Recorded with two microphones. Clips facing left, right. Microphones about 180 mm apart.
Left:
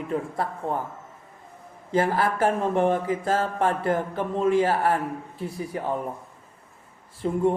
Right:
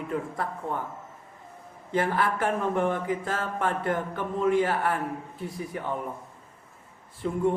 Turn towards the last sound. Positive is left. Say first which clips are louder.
# left 3 dB
turn(degrees=35)  # may be behind; listen again after turning